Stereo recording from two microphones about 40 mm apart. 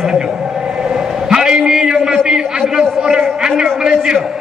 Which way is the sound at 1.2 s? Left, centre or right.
Centre.